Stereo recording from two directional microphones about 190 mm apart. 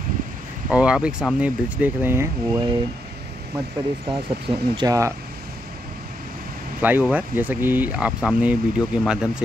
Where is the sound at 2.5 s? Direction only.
25° right (ahead or behind).